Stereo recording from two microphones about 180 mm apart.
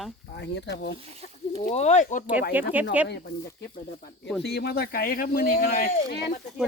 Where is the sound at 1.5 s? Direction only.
40° left (ahead or behind).